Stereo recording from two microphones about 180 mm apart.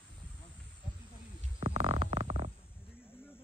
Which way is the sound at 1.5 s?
35° right (ahead or behind).